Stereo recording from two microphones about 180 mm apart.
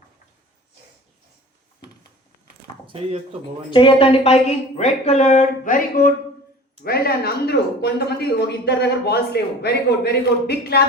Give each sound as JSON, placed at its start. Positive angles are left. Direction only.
{"t": 2.8, "sound": "speech", "side_deg": -30}
{"t": 3.7, "sound": "speech", "side_deg": 30}
{"t": 6.8, "sound": "speech", "side_deg": 60}